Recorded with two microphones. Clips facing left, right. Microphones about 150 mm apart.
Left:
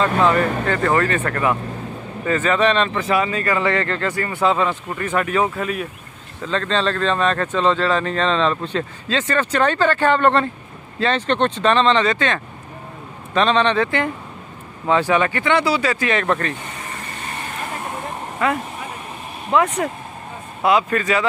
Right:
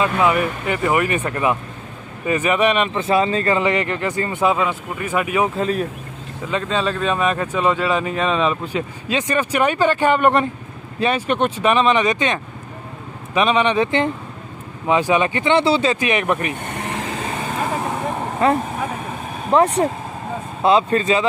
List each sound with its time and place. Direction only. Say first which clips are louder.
0.0 s speech: left 1 dB; 10° right (ahead or behind)
3.0 s speech: right 2 dB; 30° right (ahead or behind)
3.6 s speech: right 1 dB; 15° right (ahead or behind)
5.6 s speech: right 4 dB; 35° right (ahead or behind)
6.5 s speech: left 1 dB; 10° right (ahead or behind)
16.6 s vehicle: right 7 dB; 70° right (ahead or behind)
18.4 s speech: right 4 dB; 30° right (ahead or behind)